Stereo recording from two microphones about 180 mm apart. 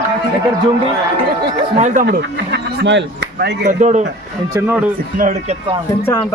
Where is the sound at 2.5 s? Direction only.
75° right (ahead or behind).